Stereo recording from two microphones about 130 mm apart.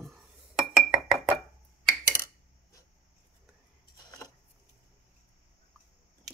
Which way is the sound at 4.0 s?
25° left (ahead or behind).